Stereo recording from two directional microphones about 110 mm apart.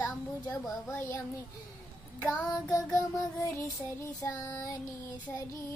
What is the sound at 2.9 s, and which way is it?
Child singing, 25° left (ahead or behind).